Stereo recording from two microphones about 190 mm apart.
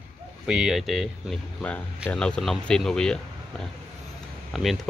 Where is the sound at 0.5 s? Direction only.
5° right (ahead or behind).